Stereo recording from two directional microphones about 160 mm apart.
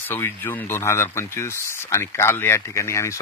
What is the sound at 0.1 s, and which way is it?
Speech, 15° left (ahead or behind).